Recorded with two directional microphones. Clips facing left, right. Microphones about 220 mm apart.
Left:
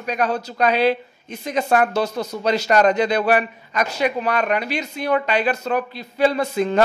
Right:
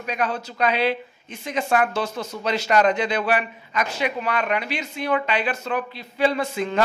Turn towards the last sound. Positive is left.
turn(degrees=40)  # may be behind; listen again after turning